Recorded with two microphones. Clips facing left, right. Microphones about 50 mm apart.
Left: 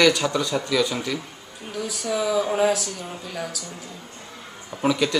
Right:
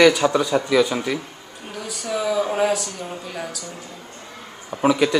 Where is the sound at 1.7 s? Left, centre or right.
Centre.